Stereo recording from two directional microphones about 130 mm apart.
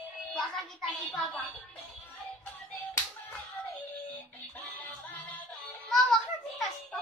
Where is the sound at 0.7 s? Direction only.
10° left (ahead or behind).